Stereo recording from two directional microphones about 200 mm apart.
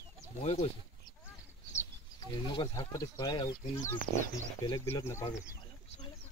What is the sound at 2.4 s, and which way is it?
Speech, 25° left (ahead or behind).